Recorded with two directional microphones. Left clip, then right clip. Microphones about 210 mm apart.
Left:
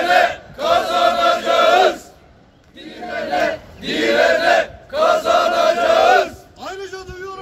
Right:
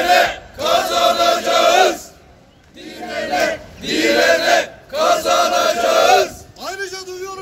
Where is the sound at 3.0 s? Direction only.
35° left (ahead or behind).